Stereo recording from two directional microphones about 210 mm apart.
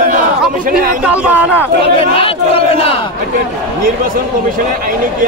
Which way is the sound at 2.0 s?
25° left (ahead or behind).